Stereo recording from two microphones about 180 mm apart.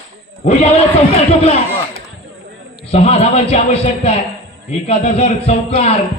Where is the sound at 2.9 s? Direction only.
35° left (ahead or behind).